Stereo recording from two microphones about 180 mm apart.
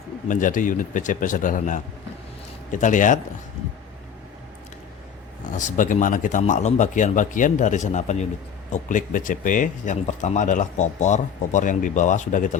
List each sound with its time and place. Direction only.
0.3 s speech: 45° left (ahead or behind)
5.5 s speech: 45° left (ahead or behind)